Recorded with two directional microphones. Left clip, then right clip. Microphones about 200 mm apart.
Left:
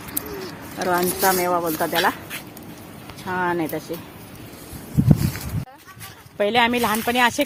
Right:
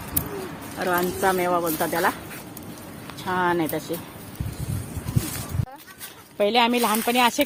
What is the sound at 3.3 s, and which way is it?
Speech, 20° left (ahead or behind).